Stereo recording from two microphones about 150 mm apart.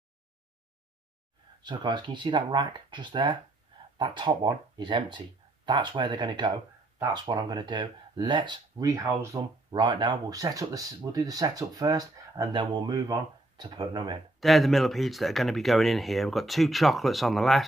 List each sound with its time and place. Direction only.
1.6 s speech: 30° right (ahead or behind)
14.4 s speech: centre (ahead or behind)